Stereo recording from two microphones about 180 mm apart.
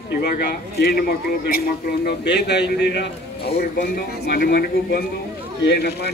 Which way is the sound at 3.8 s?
55° left (ahead or behind).